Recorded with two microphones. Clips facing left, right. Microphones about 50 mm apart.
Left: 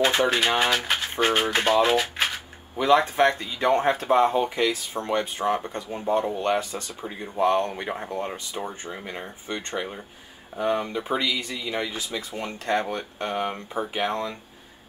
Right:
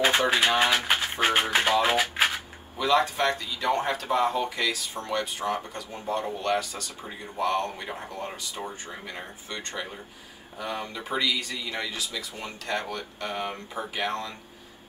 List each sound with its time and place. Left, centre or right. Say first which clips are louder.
0.6 s speech: even; centre
2.8 s speech: left 4 dB; left